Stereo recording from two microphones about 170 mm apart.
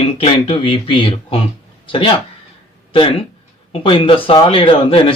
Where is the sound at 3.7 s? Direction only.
30° left (ahead or behind).